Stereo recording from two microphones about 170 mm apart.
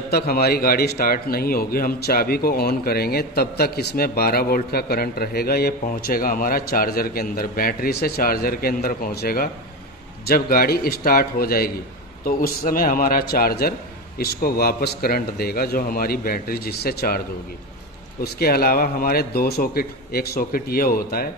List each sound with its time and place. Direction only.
0.1 s speech: 65° left (ahead or behind)
18.2 s speech: 65° left (ahead or behind)